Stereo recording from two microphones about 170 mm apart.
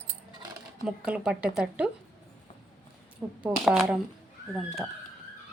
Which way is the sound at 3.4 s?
Centre (ahead or behind).